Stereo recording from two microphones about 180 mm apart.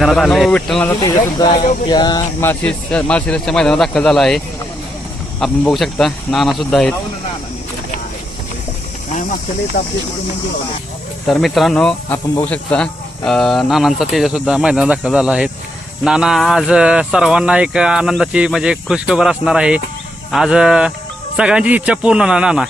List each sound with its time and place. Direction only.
0.0 s speech: centre (ahead or behind)
1.0 s speech: 20° left (ahead or behind)
2.4 s speech: 10° left (ahead or behind)
5.4 s speech: centre (ahead or behind)
9.8 s speech: 45° left (ahead or behind)
11.3 s speech: centre (ahead or behind)